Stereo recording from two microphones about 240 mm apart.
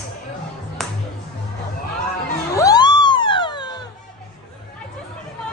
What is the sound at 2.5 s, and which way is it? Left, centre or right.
Music, centre.